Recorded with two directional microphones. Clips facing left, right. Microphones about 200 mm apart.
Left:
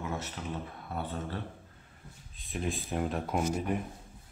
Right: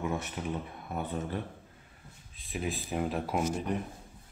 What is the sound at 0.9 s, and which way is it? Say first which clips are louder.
Speech: right 2 dB; 15° right (ahead or behind).